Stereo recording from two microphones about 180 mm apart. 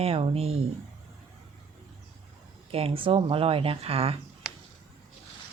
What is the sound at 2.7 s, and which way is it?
Speech, 30° right (ahead or behind).